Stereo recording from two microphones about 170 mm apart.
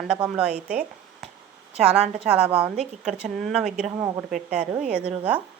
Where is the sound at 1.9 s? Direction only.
40° right (ahead or behind).